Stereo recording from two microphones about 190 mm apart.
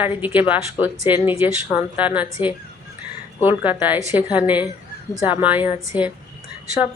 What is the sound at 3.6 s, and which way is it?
Speech, 10° right (ahead or behind).